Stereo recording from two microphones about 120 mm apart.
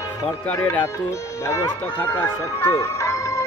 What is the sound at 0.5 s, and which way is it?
Speech, 15° left (ahead or behind).